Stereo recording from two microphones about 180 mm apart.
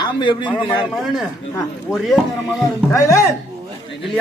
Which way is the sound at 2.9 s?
15° left (ahead or behind).